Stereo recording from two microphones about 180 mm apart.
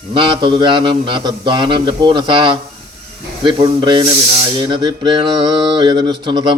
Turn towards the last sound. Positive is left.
turn(degrees=-25)  # may be behind; listen again after turning